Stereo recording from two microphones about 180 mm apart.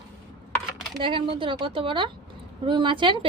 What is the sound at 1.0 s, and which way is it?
A woman's voice, 30° right (ahead or behind).